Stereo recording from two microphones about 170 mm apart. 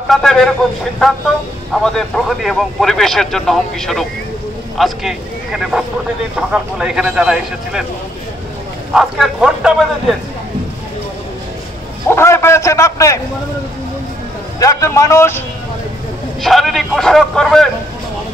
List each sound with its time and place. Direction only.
0.1 s speech: centre (ahead or behind)
8.9 s speech: 5° right (ahead or behind)
12.1 s a man's voice: 15° left (ahead or behind)
14.6 s a man's voice: 20° left (ahead or behind)
16.4 s speech: centre (ahead or behind)